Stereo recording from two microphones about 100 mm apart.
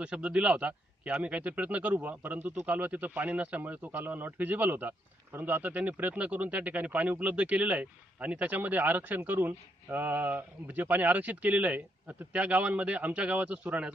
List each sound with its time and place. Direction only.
0.0 s a man's voice: 10° right (ahead or behind)